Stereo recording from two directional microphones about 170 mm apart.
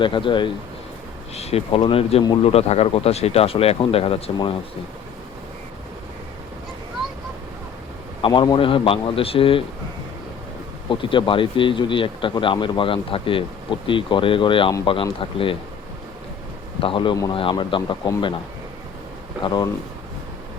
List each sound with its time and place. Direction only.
0.0 s a man's voice: 30° left (ahead or behind)
8.2 s speech: 25° left (ahead or behind)
10.8 s speech: 30° left (ahead or behind)
16.8 s a man's voice: 30° left (ahead or behind)
19.4 s a man's voice: 25° left (ahead or behind)